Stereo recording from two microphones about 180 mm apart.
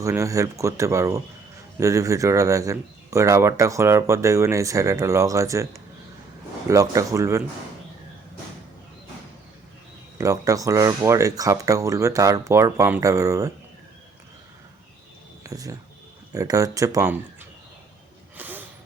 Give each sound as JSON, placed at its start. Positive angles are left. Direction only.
{"t": 0.0, "sound": "speech", "side_deg": -15}
{"t": 6.7, "sound": "speech", "side_deg": -15}
{"t": 10.2, "sound": "speech", "side_deg": -20}
{"t": 15.4, "sound": "speech", "side_deg": -20}
{"t": 18.3, "sound": "a sound", "side_deg": -10}